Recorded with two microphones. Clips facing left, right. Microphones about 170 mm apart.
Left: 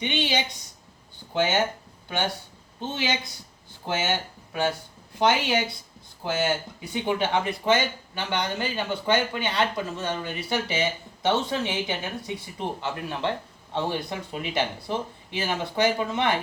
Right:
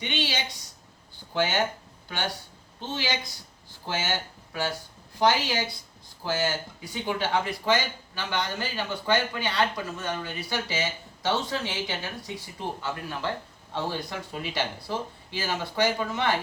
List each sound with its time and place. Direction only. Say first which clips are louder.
0.0 s speech: left 4 dB; 20° left (ahead or behind)
2.9 s speech: left 2 dB; 20° left (ahead or behind)